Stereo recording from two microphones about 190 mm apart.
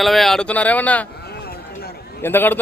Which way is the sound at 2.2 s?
10° left (ahead or behind).